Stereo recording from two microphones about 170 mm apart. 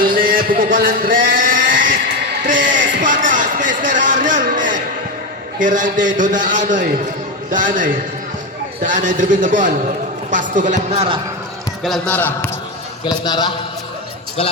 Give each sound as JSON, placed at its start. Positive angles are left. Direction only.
{"t": 0.0, "sound": "a sound", "side_deg": -60}
{"t": 2.6, "sound": "music", "side_deg": -50}
{"t": 3.8, "sound": "a man's voice", "side_deg": -50}
{"t": 11.8, "sound": "a man's voice", "side_deg": 0}
{"t": 12.1, "sound": "a man's voice", "side_deg": 10}
{"t": 13.1, "sound": "a man's voice", "side_deg": 25}